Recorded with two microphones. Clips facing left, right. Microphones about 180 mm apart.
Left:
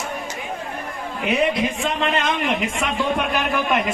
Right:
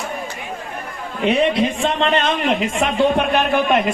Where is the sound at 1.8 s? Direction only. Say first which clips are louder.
Right 4 dB; 30° right (ahead or behind).